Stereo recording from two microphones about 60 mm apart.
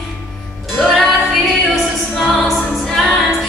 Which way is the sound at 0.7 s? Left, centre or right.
Centre.